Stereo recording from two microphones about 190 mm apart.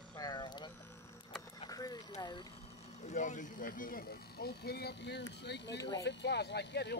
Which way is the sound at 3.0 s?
40° left (ahead or behind).